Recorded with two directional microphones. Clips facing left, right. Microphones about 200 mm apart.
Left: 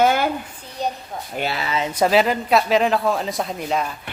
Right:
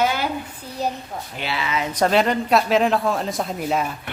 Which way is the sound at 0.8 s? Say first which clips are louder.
Even; 5° right (ahead or behind).